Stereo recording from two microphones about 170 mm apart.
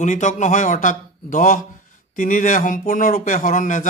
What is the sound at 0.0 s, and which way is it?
Speech, 45° left (ahead or behind).